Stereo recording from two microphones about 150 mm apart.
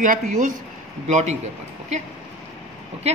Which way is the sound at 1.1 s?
45° right (ahead or behind).